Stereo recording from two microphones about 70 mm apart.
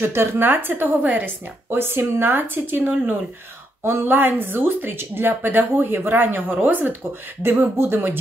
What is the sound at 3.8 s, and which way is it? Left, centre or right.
Speech, right.